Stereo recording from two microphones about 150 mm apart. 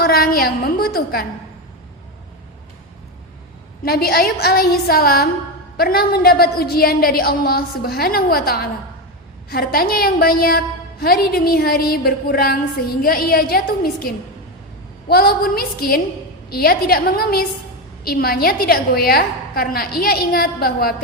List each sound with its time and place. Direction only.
0.0 s a woman's voice: 85° left
3.8 s a woman's voice: 85° left
13.0 s a woman's voice: 75° left (ahead or behind)
15.1 s a woman's voice: 85° left